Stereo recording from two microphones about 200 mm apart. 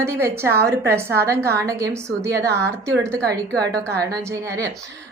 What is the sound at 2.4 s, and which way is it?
Speech, 55° right (ahead or behind).